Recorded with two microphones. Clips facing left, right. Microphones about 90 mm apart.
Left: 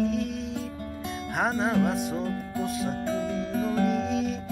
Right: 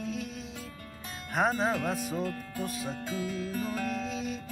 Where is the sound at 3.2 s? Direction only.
25° left (ahead or behind).